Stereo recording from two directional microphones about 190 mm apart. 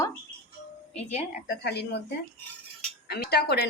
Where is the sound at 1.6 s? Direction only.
60° left (ahead or behind).